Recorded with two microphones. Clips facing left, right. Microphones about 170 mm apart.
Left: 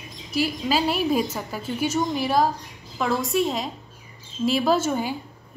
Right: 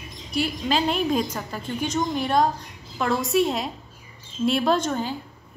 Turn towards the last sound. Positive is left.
turn(degrees=10)  # may be behind; listen again after turning